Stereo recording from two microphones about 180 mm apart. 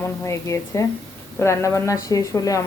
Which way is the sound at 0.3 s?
15° left (ahead or behind).